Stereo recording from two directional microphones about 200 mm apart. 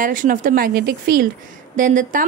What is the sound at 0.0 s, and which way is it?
Speech, 40° right (ahead or behind).